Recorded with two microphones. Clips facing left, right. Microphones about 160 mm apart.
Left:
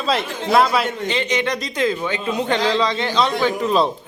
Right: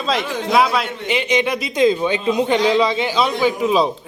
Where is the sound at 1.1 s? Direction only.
15° right (ahead or behind).